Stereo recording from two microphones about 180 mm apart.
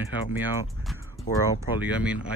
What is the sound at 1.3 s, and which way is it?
Speech, 40° left (ahead or behind).